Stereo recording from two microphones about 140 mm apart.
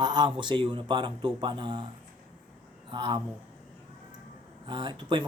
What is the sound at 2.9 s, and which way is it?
Speech, 35° right (ahead or behind).